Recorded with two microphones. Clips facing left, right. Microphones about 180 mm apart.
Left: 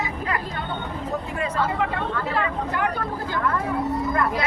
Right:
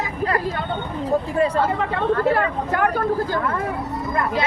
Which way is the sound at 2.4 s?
50° right (ahead or behind).